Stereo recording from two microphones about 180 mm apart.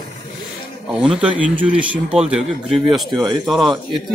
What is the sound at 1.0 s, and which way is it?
Speech, 5° right (ahead or behind).